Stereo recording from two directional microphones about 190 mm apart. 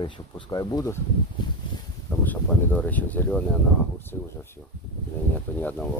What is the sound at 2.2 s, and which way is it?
Speech, 10° left (ahead or behind).